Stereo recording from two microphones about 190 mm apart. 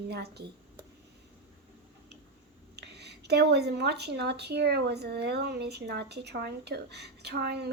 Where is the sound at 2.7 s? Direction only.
60° right (ahead or behind).